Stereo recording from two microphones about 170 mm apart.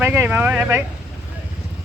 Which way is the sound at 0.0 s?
10° right (ahead or behind).